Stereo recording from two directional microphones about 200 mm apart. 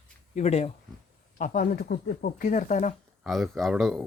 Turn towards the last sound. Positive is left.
turn(degrees=0)  # may be behind; listen again after turning